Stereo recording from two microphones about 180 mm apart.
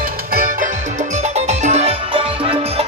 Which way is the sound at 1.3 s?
40° right (ahead or behind).